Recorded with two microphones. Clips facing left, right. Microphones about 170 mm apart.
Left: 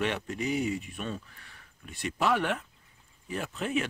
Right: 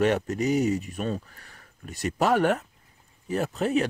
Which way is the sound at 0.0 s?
45° right (ahead or behind).